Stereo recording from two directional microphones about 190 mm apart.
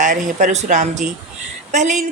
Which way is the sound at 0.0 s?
40° right (ahead or behind).